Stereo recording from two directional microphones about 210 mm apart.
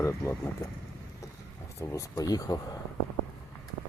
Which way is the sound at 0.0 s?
15° left (ahead or behind).